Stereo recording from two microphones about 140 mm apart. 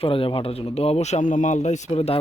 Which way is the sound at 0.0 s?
40° left (ahead or behind).